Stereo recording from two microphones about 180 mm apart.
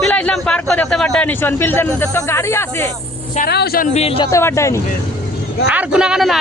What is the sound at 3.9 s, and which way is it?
Speech, 30° left (ahead or behind).